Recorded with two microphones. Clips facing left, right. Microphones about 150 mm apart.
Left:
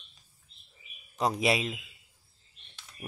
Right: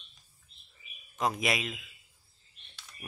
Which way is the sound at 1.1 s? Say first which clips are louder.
Left 3 dB; 35° left (ahead or behind).